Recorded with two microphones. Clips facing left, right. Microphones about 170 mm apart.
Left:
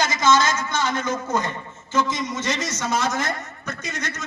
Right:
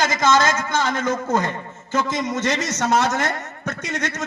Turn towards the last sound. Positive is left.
turn(degrees=-90)